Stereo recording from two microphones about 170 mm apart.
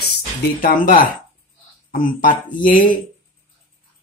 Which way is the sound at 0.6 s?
55° left (ahead or behind).